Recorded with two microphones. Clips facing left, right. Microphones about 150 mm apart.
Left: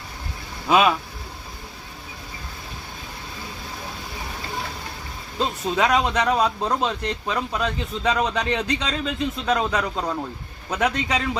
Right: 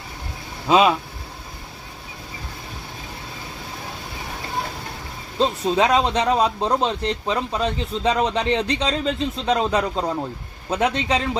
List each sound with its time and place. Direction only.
0.7 s speech: 20° right (ahead or behind)
5.4 s speech: 25° right (ahead or behind)